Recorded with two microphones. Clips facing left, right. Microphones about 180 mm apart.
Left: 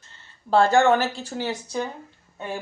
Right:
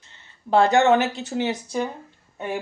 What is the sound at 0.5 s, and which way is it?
Speech, 20° right (ahead or behind).